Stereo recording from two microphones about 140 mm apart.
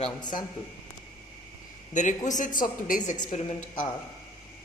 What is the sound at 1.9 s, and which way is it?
A woman's voice, 65° left (ahead or behind).